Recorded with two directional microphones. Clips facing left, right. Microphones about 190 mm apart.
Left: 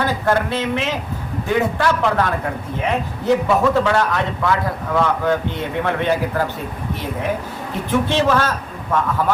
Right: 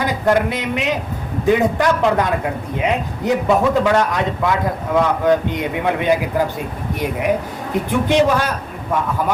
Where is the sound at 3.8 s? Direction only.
15° right (ahead or behind).